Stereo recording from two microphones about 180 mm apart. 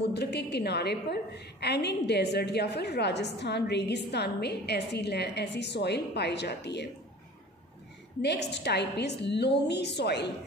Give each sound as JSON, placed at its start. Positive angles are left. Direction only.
{"t": 0.1, "sound": "a woman's voice", "side_deg": 65}
{"t": 8.2, "sound": "a woman's voice", "side_deg": 70}